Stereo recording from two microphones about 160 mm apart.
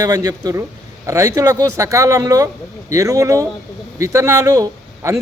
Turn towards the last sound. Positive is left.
turn(degrees=-20)  # may be behind; listen again after turning